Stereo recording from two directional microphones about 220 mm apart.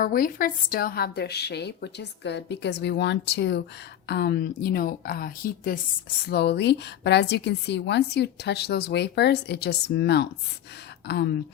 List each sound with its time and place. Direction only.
0.0 s a woman's voice: 40° left (ahead or behind)